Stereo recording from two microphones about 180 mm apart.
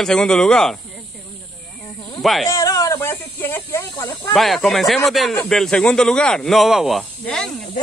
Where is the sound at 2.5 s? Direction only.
20° left (ahead or behind).